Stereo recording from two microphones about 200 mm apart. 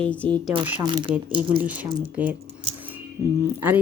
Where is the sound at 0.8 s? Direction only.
25° right (ahead or behind).